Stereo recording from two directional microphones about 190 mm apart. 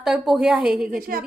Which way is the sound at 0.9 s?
50° right (ahead or behind).